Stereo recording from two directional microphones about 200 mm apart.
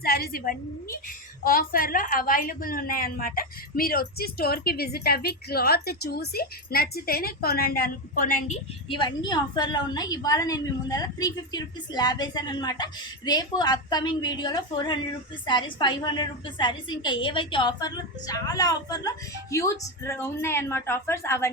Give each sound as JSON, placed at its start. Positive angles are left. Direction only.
{"t": 0.0, "sound": "a woman's voice", "side_deg": 50}